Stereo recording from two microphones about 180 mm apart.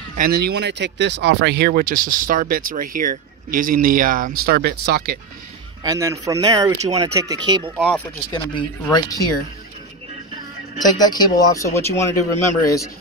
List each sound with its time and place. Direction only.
0.2 s speech: 60° right (ahead or behind)
5.9 s speech: 20° right (ahead or behind)
7.7 s speech: centre (ahead or behind)
8.3 s speech: 25° left (ahead or behind)
10.8 s a man's voice: 20° left (ahead or behind)